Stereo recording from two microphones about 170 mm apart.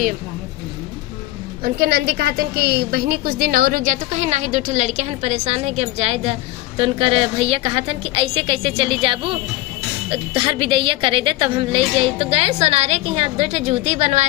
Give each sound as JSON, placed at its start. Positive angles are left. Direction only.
{"t": 1.6, "sound": "a woman's voice", "side_deg": -65}